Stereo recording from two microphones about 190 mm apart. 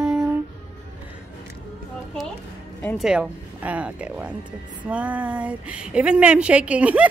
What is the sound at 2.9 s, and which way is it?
A woman's voice, 5° right (ahead or behind).